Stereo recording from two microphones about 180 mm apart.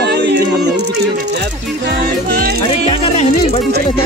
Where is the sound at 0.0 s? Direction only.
70° right (ahead or behind).